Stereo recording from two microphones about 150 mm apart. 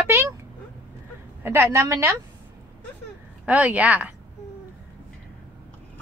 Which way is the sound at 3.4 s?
10° right (ahead or behind).